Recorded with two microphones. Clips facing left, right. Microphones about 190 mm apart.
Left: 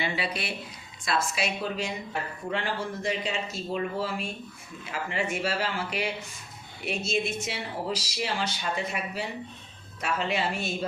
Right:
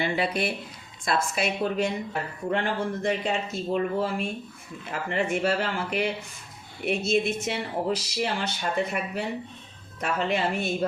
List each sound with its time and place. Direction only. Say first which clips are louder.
0.0 s speech: right 5 dB; 50° right (ahead or behind)